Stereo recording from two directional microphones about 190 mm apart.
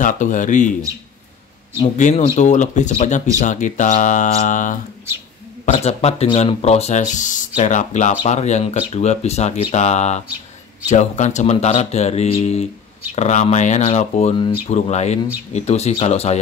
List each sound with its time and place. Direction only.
0.0 s speech: 40° left (ahead or behind)
2.0 s speech: 40° left (ahead or behind)